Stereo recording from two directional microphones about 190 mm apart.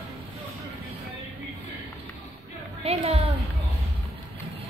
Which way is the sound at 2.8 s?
30° right (ahead or behind).